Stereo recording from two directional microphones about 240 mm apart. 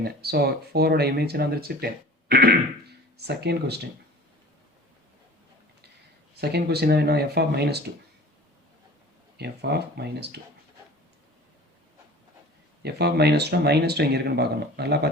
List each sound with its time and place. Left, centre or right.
0.0 s speech: right
6.3 s speech: right
9.4 s speech: right
12.8 s speech: right